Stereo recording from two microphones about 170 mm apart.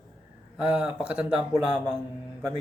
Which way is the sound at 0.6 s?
5° right (ahead or behind).